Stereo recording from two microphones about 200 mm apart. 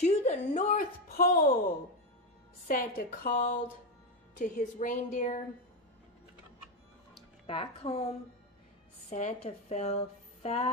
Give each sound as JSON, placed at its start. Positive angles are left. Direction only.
{"t": 0.0, "sound": "a sound", "side_deg": 35}
{"t": 2.7, "sound": "a woman's voice", "side_deg": 45}
{"t": 7.4, "sound": "speech", "side_deg": 30}
{"t": 9.1, "sound": "a woman's voice", "side_deg": 35}